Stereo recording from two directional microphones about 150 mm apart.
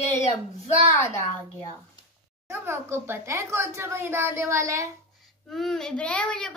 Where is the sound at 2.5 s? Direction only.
15° right (ahead or behind).